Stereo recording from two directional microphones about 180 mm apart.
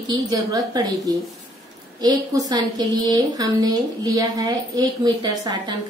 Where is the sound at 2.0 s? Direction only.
20° right (ahead or behind).